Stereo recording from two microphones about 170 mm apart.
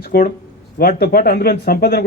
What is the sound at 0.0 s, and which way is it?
A man's voice, 60° left (ahead or behind).